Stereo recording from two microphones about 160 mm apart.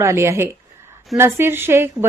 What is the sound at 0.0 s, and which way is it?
Speech, 15° right (ahead or behind).